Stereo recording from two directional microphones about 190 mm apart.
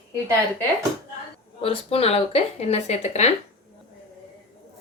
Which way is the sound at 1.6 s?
30° left (ahead or behind).